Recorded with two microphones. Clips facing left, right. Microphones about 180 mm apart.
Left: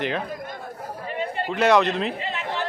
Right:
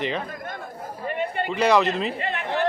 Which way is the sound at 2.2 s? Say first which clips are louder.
Right 3 dB; 55° right (ahead or behind).